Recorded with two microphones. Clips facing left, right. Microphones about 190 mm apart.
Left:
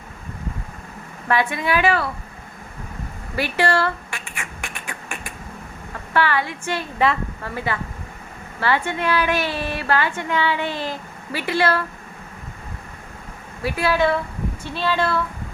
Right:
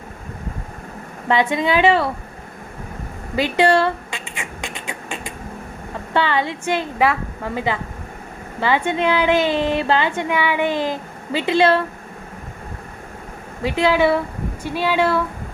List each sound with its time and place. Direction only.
1.3 s a woman's voice: 20° right (ahead or behind)
3.3 s a sound: 15° right (ahead or behind)
6.1 s a woman's voice: 20° right (ahead or behind)
13.6 s a woman's voice: 20° right (ahead or behind)